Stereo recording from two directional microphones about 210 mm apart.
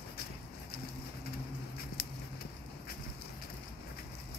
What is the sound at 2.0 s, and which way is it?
Clip-clop, 45° left (ahead or behind).